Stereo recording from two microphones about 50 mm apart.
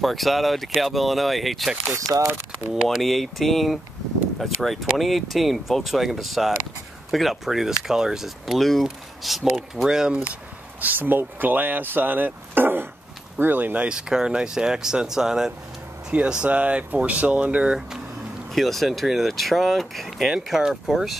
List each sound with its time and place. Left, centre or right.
0.0 s speech: centre
10.8 s speech: right
13.8 s speech: centre
16.4 s speech: right
18.5 s speech: centre